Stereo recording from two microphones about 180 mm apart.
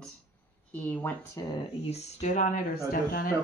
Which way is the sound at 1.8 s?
35° left (ahead or behind).